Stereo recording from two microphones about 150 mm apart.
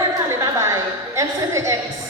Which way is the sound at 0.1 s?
20° right (ahead or behind).